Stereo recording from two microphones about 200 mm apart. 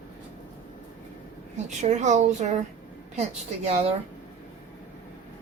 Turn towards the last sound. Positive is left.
turn(degrees=-35)  # may be behind; listen again after turning